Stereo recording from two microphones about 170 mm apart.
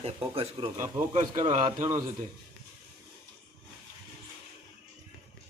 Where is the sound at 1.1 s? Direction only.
45° right (ahead or behind).